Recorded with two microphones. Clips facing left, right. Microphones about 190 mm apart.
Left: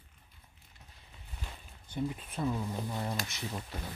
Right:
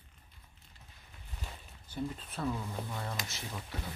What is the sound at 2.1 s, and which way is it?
Speech, 10° left (ahead or behind).